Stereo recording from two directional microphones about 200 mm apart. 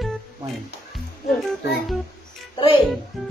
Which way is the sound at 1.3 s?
Centre (ahead or behind).